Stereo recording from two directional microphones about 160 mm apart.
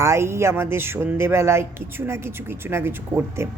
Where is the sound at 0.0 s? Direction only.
15° right (ahead or behind).